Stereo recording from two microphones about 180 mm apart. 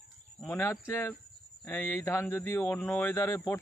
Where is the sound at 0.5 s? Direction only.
10° left (ahead or behind).